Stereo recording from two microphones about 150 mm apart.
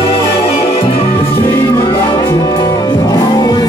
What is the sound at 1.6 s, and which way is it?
Music, 20° left (ahead or behind).